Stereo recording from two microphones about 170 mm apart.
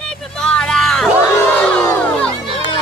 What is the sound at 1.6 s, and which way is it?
Crowd, 5° left (ahead or behind).